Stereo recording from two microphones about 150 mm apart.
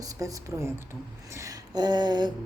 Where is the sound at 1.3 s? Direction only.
25° right (ahead or behind).